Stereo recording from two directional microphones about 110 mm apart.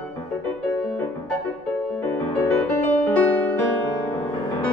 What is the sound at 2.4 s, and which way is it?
Music, 20° left (ahead or behind).